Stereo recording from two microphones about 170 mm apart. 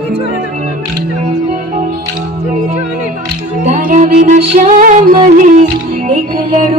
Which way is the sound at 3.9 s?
50° right (ahead or behind).